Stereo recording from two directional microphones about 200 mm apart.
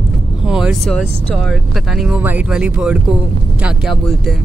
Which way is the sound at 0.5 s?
Centre (ahead or behind).